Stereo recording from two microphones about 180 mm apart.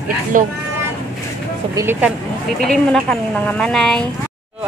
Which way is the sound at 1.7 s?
15° right (ahead or behind).